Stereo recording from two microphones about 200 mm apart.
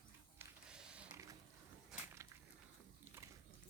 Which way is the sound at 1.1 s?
15° right (ahead or behind).